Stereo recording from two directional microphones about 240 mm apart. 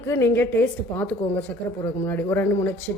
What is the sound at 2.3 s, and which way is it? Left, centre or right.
Speech, centre.